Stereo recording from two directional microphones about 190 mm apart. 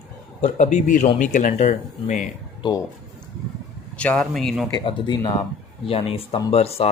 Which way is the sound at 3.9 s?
5° left (ahead or behind).